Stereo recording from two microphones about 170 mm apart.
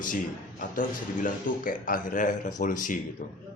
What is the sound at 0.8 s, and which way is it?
Speech, 50° left (ahead or behind).